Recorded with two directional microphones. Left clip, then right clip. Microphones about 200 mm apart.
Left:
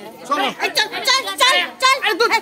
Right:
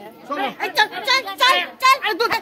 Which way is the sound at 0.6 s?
25° right (ahead or behind).